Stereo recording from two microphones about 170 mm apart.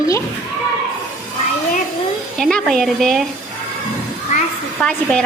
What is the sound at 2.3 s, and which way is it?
Speech, centre (ahead or behind).